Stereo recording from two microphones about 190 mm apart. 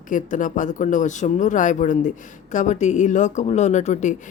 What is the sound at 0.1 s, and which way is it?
Speech, 40° left (ahead or behind).